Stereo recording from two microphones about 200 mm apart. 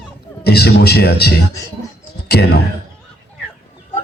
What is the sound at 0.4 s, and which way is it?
Speech, 55° left (ahead or behind).